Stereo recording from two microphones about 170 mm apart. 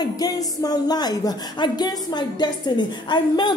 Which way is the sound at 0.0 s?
25° left (ahead or behind).